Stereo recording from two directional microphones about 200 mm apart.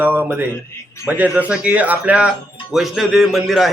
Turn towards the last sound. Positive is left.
turn(degrees=0)  # may be behind; listen again after turning